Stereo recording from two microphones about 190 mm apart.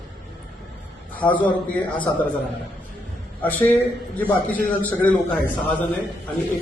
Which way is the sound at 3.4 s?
10° left (ahead or behind).